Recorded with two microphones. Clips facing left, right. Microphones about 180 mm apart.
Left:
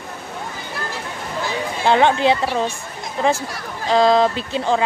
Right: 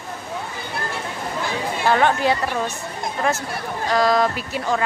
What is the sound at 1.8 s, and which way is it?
Speech, 25° left (ahead or behind).